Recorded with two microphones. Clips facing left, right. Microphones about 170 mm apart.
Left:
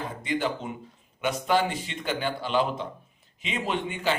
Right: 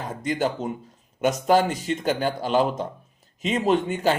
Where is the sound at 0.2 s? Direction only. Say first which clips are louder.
Right 4 dB; 45° right (ahead or behind).